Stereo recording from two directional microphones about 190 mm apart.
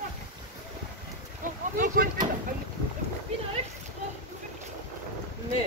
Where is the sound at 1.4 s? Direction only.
45° right (ahead or behind).